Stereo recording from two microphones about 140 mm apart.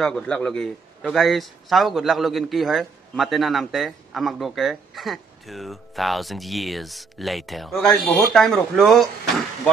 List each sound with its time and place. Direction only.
0.0 s a man's voice: 5° left (ahead or behind)